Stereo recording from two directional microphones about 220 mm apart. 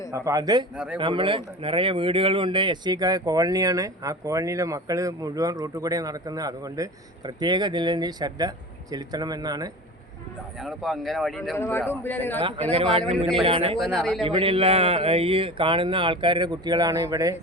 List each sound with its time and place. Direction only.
0.1 s speech: 15° right (ahead or behind)
10.6 s a man's voice: centre (ahead or behind)
12.7 s speech: 25° right (ahead or behind)
13.7 s speech: centre (ahead or behind)
14.3 s speech: 25° right (ahead or behind)